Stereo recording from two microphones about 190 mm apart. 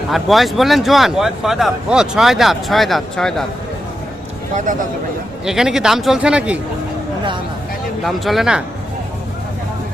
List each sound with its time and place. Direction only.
0.1 s speech: centre (ahead or behind)
4.5 s speech: 40° right (ahead or behind)
5.5 s speech: centre (ahead or behind)
8.0 s speech: centre (ahead or behind)